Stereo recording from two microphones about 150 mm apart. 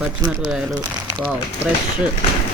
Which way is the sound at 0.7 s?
25° right (ahead or behind).